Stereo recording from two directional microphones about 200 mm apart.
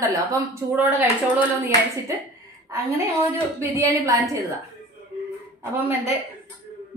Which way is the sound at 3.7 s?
15° right (ahead or behind).